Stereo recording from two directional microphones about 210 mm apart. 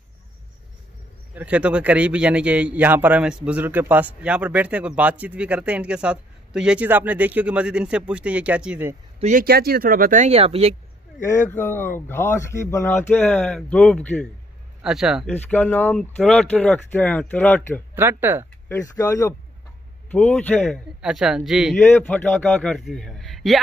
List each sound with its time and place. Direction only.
1.3 s a man's voice: 5° right (ahead or behind)
9.2 s speech: 40° right (ahead or behind)
11.5 s speech: 10° left (ahead or behind)
17.9 s speech: 10° right (ahead or behind)
18.7 s a man's voice: 15° left (ahead or behind); by 21.7 s 5° right (ahead or behind)
21.9 s a man's voice: 5° left (ahead or behind)